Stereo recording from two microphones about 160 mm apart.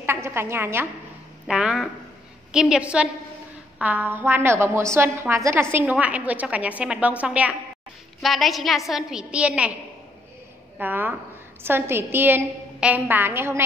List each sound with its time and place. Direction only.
0.0 s a sound: 15° right (ahead or behind)
1.5 s a woman's voice: 5° right (ahead or behind)
10.8 s a woman's voice: 10° right (ahead or behind)